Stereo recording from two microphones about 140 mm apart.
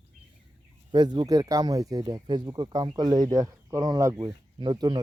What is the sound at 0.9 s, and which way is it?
Speech, 30° right (ahead or behind).